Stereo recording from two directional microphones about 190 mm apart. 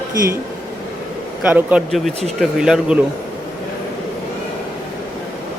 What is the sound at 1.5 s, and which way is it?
Speech, 5° right (ahead or behind).